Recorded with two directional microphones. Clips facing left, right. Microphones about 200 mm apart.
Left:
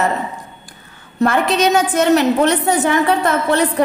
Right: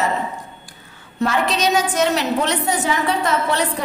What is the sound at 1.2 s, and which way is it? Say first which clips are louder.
A woman's voice: left 5 dB; 55° left (ahead or behind).